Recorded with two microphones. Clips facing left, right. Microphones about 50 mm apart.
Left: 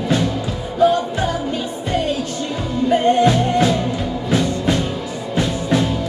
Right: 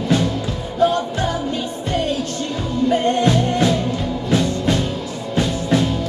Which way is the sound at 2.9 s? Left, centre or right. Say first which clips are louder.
Left 3 dB; centre.